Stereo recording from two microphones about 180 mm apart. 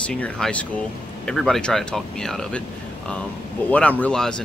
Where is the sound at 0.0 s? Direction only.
5° left (ahead or behind).